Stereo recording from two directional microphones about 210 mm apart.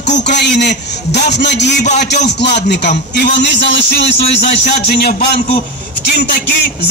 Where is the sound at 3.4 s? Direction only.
55° left (ahead or behind).